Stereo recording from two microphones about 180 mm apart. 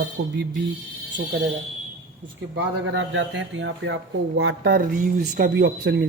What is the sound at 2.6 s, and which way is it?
Speech, 90° right.